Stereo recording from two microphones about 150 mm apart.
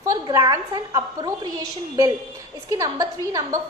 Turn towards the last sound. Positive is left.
turn(degrees=-20)  # may be behind; listen again after turning